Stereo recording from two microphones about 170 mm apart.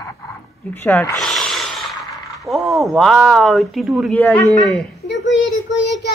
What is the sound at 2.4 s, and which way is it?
Speech, centre (ahead or behind).